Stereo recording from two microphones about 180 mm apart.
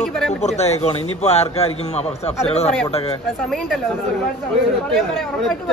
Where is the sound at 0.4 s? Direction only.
35° left (ahead or behind).